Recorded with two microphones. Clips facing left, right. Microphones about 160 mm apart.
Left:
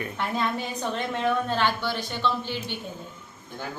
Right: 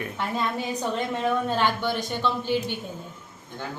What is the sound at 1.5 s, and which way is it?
Speech, 15° right (ahead or behind).